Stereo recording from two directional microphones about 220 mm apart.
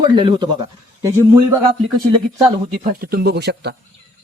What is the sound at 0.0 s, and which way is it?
Speech, 20° right (ahead or behind).